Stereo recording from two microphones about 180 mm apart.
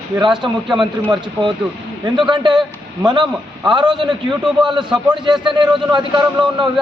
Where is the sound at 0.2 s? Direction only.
25° right (ahead or behind).